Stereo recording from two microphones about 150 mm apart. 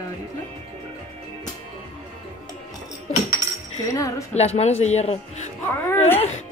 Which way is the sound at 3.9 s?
20° left (ahead or behind).